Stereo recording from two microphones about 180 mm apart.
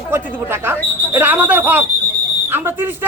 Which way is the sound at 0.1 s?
10° right (ahead or behind).